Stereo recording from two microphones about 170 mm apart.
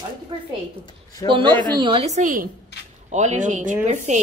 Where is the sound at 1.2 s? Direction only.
30° right (ahead or behind).